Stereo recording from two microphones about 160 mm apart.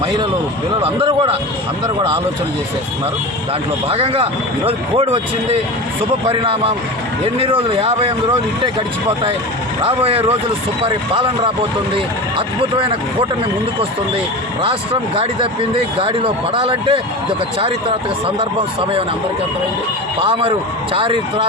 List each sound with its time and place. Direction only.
0.8 s speech: 35° right (ahead or behind)
3.8 s speech: 35° right (ahead or behind)
9.8 s speech: 35° right (ahead or behind)
12.7 s speech: 35° right (ahead or behind)
14.6 s speech: 35° right (ahead or behind)
18.3 s speech: 35° right (ahead or behind)
20.1 s speech: 30° right (ahead or behind)